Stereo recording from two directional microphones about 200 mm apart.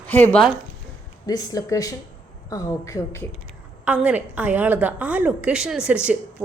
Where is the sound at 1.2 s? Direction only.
20° left (ahead or behind).